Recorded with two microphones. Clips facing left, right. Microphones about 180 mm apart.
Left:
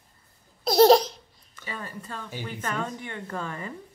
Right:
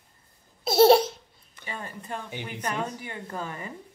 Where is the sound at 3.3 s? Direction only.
15° right (ahead or behind).